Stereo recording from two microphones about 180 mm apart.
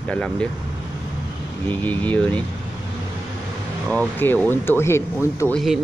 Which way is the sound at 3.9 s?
10° left (ahead or behind).